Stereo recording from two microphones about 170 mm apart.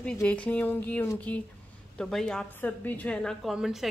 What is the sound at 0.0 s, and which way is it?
A woman's voice, 5° left (ahead or behind).